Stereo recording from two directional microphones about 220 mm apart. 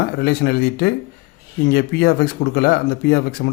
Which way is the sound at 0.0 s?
45° left (ahead or behind).